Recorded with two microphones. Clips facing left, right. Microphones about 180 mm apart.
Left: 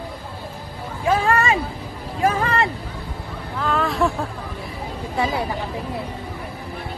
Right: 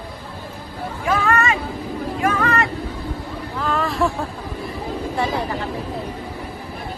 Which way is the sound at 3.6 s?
Centre (ahead or behind).